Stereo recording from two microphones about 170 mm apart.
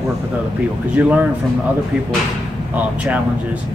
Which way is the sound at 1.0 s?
10° right (ahead or behind).